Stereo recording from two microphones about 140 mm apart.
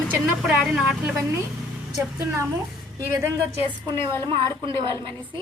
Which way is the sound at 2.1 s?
20° right (ahead or behind).